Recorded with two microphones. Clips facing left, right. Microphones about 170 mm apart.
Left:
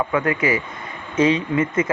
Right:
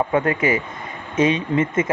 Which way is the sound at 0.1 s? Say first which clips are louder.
Right 1 dB; 30° right (ahead or behind).